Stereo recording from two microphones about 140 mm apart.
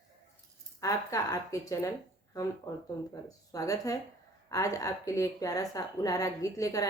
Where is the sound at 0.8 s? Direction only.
25° left (ahead or behind).